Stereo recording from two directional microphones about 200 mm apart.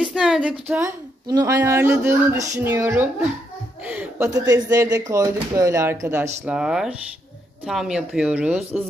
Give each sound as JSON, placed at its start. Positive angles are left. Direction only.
{"t": 0.0, "sound": "a woman's voice", "side_deg": 0}
{"t": 3.8, "sound": "a sound", "side_deg": -5}
{"t": 4.3, "sound": "a woman's voice", "side_deg": -20}